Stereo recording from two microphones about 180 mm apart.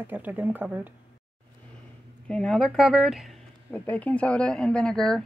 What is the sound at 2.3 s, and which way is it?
Speech, 5° left (ahead or behind).